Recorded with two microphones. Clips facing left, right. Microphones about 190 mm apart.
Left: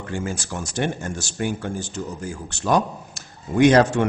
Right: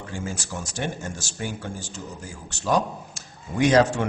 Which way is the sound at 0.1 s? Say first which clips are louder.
Left 5 dB; 60° left (ahead or behind).